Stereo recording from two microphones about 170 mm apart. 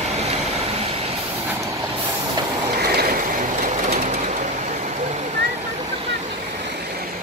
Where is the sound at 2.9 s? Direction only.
60° right (ahead or behind); by 6.0 s 40° right (ahead or behind).